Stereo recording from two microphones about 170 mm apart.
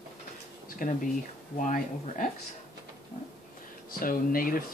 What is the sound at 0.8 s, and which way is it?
Speech, 55° left (ahead or behind).